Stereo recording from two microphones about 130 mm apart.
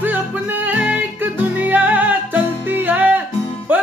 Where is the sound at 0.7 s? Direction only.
15° right (ahead or behind).